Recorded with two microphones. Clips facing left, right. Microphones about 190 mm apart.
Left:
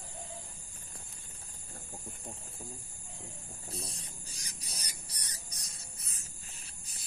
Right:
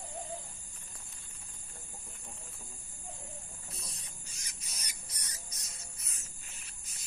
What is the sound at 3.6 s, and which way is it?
Spray, 30° left (ahead or behind).